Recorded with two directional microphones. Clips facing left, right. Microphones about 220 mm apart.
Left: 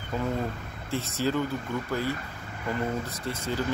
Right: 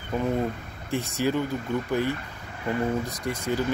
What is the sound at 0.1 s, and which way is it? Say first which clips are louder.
Speech: right 4 dB; 20° right (ahead or behind).